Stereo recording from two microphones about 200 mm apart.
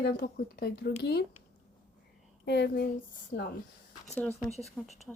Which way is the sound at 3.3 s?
35° left (ahead or behind).